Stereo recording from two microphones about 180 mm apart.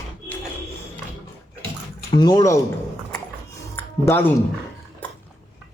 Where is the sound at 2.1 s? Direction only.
20° left (ahead or behind).